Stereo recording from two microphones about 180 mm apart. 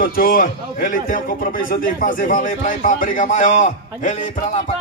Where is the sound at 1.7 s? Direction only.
50° left (ahead or behind).